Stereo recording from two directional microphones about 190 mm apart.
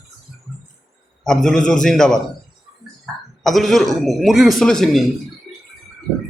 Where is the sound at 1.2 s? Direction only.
5° left (ahead or behind).